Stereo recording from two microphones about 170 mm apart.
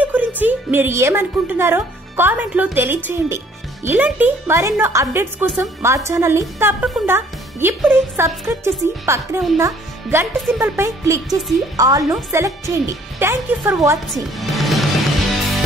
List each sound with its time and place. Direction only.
0.0 s music: 10° right (ahead or behind)
0.4 s speech: 10° right (ahead or behind)
14.0 s music: centre (ahead or behind)